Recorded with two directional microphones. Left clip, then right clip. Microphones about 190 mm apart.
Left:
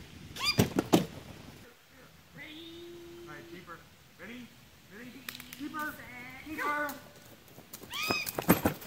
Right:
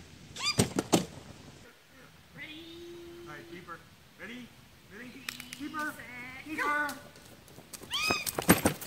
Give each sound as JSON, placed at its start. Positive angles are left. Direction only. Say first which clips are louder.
{"t": 0.3, "sound": "cat", "louder": "left 1 dB", "side_deg": 30}
{"t": 0.6, "sound": "cat", "louder": "left 1 dB", "side_deg": -15}
{"t": 4.2, "sound": "a man's voice", "louder": "right 2 dB", "side_deg": 15}
{"t": 4.9, "sound": "a sound", "louder": "right 3 dB", "side_deg": 15}
{"t": 7.7, "sound": "cat", "louder": "right 2 dB", "side_deg": 5}
{"t": 8.5, "sound": "a sound", "louder": "right 2 dB", "side_deg": -15}